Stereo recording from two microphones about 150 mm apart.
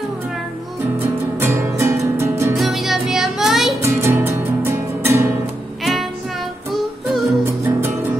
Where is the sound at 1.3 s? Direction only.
15° right (ahead or behind).